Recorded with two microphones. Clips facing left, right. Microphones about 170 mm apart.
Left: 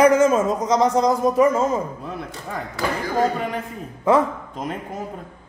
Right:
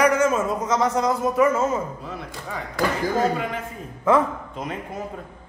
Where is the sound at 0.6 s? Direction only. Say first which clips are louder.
Left 3 dB; 35° left (ahead or behind).